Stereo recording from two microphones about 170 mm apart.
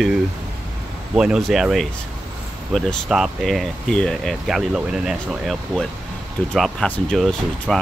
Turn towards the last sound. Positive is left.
turn(degrees=0)  # may be behind; listen again after turning